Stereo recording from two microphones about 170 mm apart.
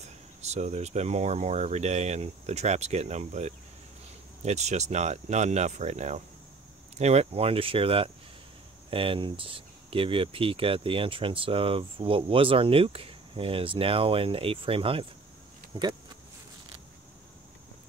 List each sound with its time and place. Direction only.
0.0 s speech: 40° right (ahead or behind)